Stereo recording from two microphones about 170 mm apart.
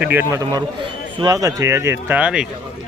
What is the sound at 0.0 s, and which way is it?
Speech, 10° right (ahead or behind).